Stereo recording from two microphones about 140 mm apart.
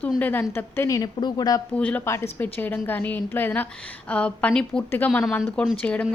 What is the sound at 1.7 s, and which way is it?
Speech, 10° left (ahead or behind).